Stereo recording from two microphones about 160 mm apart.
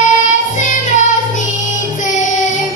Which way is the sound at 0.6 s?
50° left (ahead or behind).